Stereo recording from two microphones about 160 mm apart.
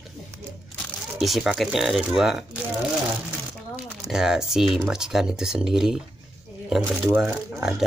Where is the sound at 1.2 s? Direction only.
Centre (ahead or behind).